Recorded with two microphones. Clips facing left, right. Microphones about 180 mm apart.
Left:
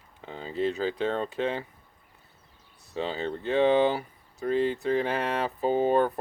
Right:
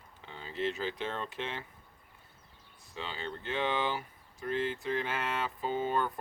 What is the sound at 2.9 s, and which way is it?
Speech, 40° left (ahead or behind).